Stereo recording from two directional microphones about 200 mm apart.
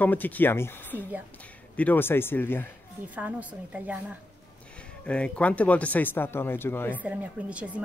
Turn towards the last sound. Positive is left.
turn(degrees=-5)  # may be behind; listen again after turning